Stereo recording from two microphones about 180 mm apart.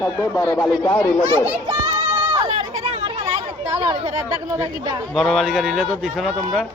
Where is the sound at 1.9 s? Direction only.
20° right (ahead or behind).